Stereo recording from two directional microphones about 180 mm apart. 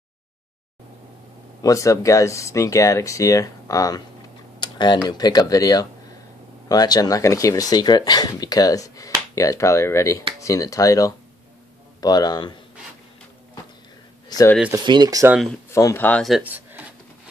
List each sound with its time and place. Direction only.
1.6 s speech: 20° left (ahead or behind)
14.9 s speech: 20° right (ahead or behind)
15.7 s speech: 15° left (ahead or behind); by 16.8 s 10° right (ahead or behind)